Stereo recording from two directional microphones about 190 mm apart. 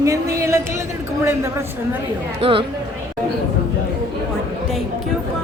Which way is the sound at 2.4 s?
30° right (ahead or behind).